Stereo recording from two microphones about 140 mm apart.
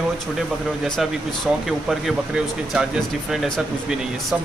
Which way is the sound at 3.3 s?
5° right (ahead or behind).